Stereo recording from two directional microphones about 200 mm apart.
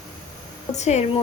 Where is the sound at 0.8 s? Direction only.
35° left (ahead or behind).